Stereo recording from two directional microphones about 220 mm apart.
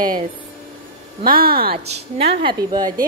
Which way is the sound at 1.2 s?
40° right (ahead or behind).